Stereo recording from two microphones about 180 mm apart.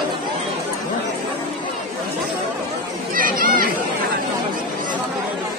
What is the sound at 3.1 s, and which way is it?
Chatter, 50° right (ahead or behind).